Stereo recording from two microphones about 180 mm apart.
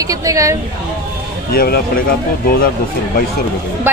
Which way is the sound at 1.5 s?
55° left (ahead or behind).